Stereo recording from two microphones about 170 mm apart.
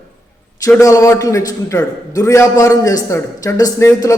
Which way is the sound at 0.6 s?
20° left (ahead or behind).